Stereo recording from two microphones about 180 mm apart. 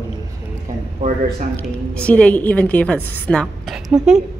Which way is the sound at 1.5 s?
5° left (ahead or behind).